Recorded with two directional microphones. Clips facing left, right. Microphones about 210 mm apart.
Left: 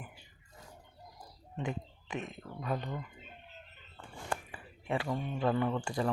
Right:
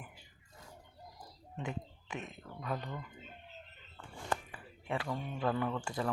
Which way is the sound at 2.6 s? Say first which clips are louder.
Left 3 dB; 15° left (ahead or behind).